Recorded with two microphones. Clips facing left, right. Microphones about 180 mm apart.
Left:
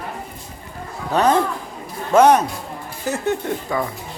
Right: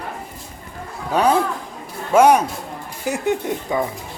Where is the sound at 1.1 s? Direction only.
10° right (ahead or behind).